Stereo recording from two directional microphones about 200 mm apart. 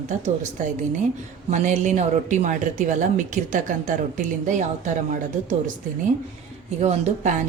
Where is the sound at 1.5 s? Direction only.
35° right (ahead or behind).